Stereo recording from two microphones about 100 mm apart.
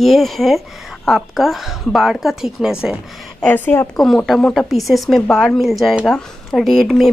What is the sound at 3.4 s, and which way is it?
Speech, 20° left (ahead or behind).